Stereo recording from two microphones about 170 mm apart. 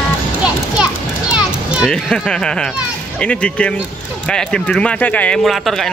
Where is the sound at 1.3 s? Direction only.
5° right (ahead or behind).